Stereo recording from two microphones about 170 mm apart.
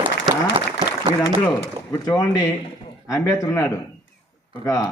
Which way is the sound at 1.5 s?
25° left (ahead or behind).